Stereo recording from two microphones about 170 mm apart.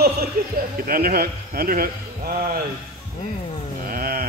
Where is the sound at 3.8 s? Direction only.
60° right (ahead or behind).